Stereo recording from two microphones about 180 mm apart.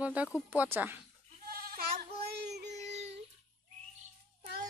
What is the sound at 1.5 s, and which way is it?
Goat, 55° right (ahead or behind).